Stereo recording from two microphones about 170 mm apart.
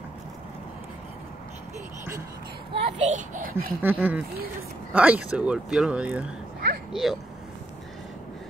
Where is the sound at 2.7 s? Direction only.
45° right (ahead or behind).